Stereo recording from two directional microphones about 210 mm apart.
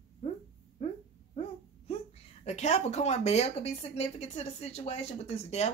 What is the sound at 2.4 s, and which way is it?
Speech, 35° left (ahead or behind).